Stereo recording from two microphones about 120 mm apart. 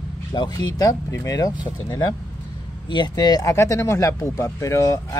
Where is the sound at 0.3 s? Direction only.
35° left (ahead or behind).